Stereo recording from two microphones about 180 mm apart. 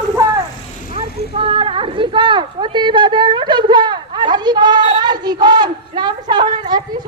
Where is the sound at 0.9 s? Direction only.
30° right (ahead or behind).